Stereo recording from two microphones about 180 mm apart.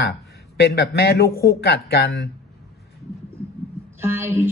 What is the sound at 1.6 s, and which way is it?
Speech, 65° left (ahead or behind).